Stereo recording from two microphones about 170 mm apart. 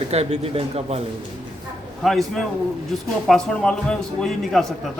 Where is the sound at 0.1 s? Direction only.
40° right (ahead or behind).